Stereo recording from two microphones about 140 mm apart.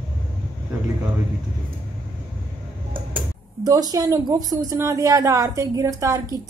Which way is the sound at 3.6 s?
25° right (ahead or behind).